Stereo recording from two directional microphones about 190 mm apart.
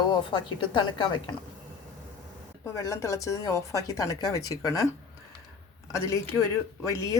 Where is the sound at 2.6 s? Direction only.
15° left (ahead or behind).